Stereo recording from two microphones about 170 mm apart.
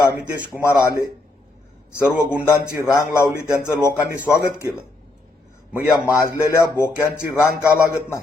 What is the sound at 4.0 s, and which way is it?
Speech, 10° right (ahead or behind).